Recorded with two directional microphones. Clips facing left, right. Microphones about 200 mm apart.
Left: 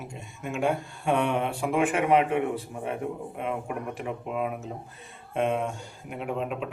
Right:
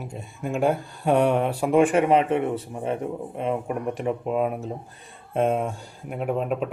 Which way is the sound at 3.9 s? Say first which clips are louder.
Right 7 dB; 35° right (ahead or behind).